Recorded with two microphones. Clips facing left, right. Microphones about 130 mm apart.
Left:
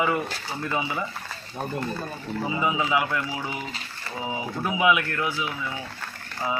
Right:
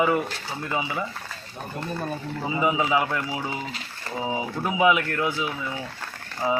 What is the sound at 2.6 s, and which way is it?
Speech, 20° right (ahead or behind).